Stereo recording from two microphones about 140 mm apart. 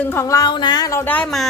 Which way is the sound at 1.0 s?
10° left (ahead or behind).